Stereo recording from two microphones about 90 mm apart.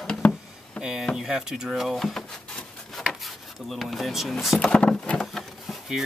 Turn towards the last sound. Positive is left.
turn(degrees=0)  # may be behind; listen again after turning